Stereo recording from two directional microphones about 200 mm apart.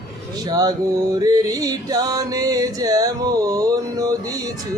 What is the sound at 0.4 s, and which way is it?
Music, 20° right (ahead or behind).